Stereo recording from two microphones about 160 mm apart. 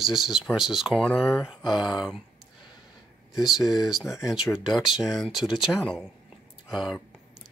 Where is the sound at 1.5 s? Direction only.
Centre (ahead or behind).